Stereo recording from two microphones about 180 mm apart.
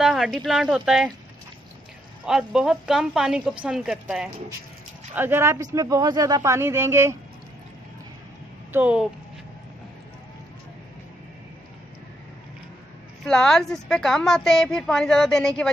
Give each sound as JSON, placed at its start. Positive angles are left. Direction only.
{"t": 0.0, "sound": "a woman's voice", "side_deg": 0}
{"t": 2.2, "sound": "a woman's voice", "side_deg": -5}
{"t": 8.7, "sound": "speech", "side_deg": -10}
{"t": 13.2, "sound": "a woman's voice", "side_deg": 5}